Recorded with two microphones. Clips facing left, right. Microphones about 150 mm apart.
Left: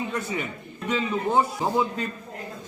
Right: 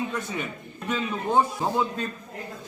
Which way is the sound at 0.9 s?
10° left (ahead or behind).